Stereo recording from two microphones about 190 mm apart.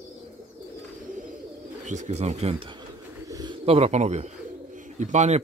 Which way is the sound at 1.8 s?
40° right (ahead or behind).